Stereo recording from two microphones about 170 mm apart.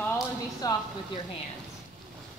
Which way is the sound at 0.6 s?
20° left (ahead or behind).